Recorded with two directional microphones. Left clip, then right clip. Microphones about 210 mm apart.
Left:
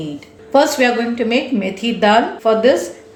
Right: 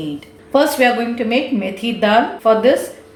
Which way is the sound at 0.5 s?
10° left (ahead or behind).